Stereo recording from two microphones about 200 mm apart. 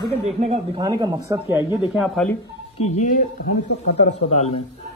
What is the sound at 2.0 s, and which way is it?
Speech, centre (ahead or behind).